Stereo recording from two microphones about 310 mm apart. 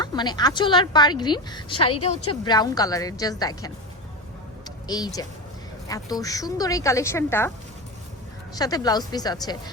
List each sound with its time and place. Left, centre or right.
0.0 s a woman's voice: centre
1.9 s a woman's voice: left
2.4 s a woman's voice: centre
4.9 s a woman's voice: centre
8.5 s a woman's voice: centre